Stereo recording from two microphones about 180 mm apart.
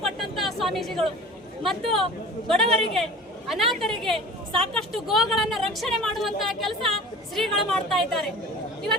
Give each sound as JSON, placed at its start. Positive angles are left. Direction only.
{"t": 0.0, "sound": "a sound", "side_deg": 0}
{"t": 1.8, "sound": "speech", "side_deg": -30}
{"t": 2.5, "sound": "a woman's voice", "side_deg": 0}